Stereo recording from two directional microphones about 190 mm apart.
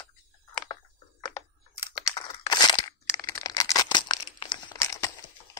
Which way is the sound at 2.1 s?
20° left (ahead or behind).